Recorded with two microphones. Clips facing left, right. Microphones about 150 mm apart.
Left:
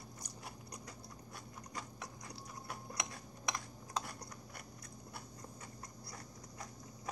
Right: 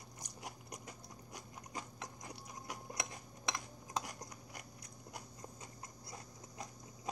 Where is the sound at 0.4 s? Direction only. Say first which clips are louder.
Right 3 dB; 20° right (ahead or behind).